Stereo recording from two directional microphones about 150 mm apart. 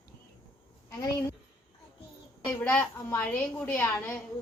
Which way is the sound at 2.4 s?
10° left (ahead or behind).